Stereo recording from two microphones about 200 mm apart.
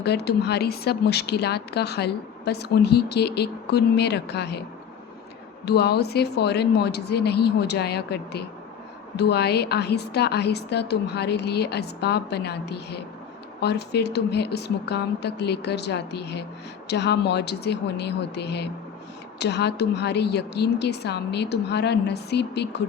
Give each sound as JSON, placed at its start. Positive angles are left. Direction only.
{"t": 0.0, "sound": "a woman's voice", "side_deg": 55}
{"t": 5.6, "sound": "a woman's voice", "side_deg": 55}